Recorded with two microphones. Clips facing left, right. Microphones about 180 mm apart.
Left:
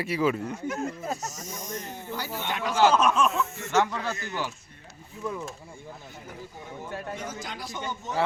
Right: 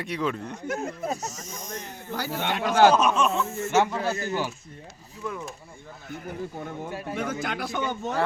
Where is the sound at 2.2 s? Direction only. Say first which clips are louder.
Right 5 dB; 65° right (ahead or behind).